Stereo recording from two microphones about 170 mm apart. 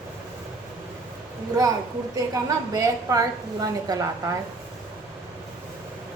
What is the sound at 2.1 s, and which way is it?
A woman's voice, 20° right (ahead or behind).